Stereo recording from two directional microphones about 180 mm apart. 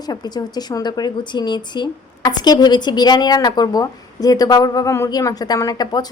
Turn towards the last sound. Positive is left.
turn(degrees=20)  # may be behind; listen again after turning